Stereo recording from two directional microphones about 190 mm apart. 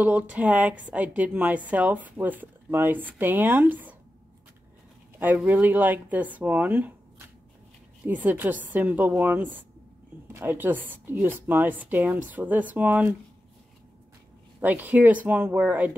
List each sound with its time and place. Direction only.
0.0 s speech: 10° right (ahead or behind)
5.2 s speech: 10° right (ahead or behind)
8.1 s speech: 10° right (ahead or behind)
14.6 s speech: 10° right (ahead or behind)